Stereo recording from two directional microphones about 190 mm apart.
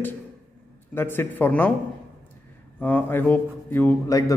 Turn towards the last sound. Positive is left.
turn(degrees=15)  # may be behind; listen again after turning